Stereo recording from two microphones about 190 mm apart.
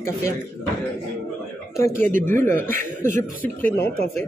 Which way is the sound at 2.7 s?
40° right (ahead or behind).